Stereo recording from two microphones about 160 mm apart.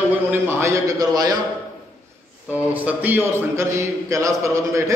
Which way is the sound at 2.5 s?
10° right (ahead or behind).